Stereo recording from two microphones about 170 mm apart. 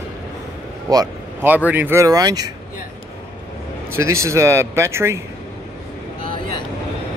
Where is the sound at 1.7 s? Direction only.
10° right (ahead or behind).